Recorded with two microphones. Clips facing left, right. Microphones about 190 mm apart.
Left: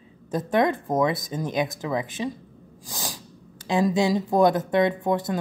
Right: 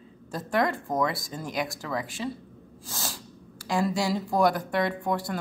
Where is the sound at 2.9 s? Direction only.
15° left (ahead or behind).